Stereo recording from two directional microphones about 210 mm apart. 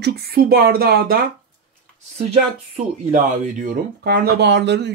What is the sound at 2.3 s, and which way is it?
Speech, 35° right (ahead or behind).